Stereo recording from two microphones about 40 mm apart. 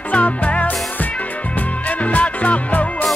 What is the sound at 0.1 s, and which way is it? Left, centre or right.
Music, left.